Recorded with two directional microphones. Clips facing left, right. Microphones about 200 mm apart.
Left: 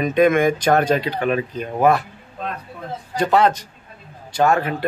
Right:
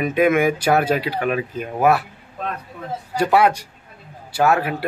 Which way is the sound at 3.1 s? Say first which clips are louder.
Even; 10° right (ahead or behind).